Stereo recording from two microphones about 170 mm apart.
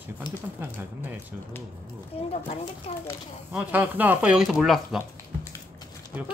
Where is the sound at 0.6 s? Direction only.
10° right (ahead or behind).